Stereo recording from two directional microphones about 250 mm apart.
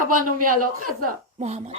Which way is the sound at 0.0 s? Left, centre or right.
Right.